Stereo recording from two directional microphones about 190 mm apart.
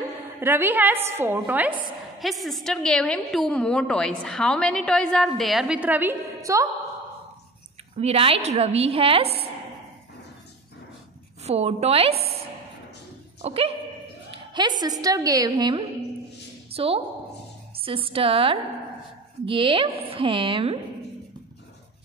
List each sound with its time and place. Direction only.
0.4 s a woman's voice: 10° right (ahead or behind)
8.0 s a woman's voice: 30° right (ahead or behind)
11.4 s a woman's voice: 35° right (ahead or behind)
13.4 s speech: 30° right (ahead or behind)
14.3 s a sound: 25° right (ahead or behind)
14.8 s a woman's voice: 20° right (ahead or behind)